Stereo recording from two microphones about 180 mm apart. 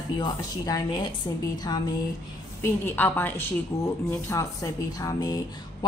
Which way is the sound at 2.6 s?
10° left (ahead or behind).